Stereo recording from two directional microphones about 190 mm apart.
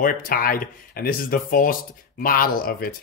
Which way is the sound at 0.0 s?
50° left (ahead or behind).